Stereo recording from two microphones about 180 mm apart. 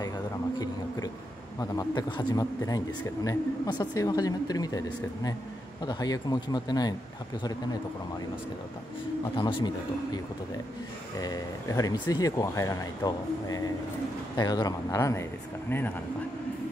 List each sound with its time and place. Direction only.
0.6 s a sound: 20° left (ahead or behind)
1.6 s speech: 20° left (ahead or behind)
9.4 s speech: 25° left (ahead or behind)
11.1 s speech: 20° left (ahead or behind)